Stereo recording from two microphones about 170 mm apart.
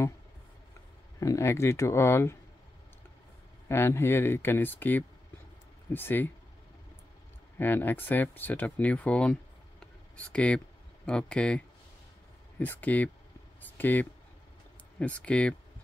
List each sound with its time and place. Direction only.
1.2 s speech: 15° left (ahead or behind)
3.6 s speech: 15° left (ahead or behind)
7.5 s speech: 10° left (ahead or behind)
13.6 s a sound: 10° left (ahead or behind)
15.0 s speech: 10° left (ahead or behind)